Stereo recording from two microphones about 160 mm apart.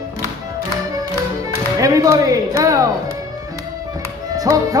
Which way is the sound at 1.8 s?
20° right (ahead or behind).